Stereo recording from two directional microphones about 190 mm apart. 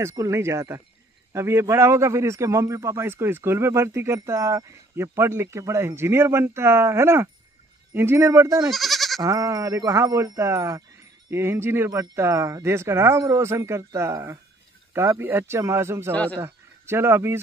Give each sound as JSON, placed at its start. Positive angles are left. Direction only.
{"t": 0.0, "sound": "a man's voice", "side_deg": -15}
{"t": 8.6, "sound": "goat", "side_deg": 0}
{"t": 9.2, "sound": "a man's voice", "side_deg": -15}
{"t": 16.1, "sound": "speech", "side_deg": 5}
{"t": 16.3, "sound": "a man's voice", "side_deg": -15}